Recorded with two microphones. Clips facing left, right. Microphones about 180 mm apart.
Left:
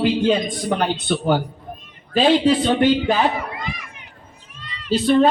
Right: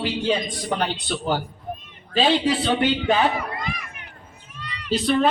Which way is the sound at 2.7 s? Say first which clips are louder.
Left 4 dB; 40° left (ahead or behind).